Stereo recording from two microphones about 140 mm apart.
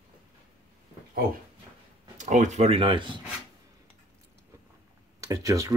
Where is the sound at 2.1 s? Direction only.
60° right (ahead or behind); by 3.2 s 35° right (ahead or behind).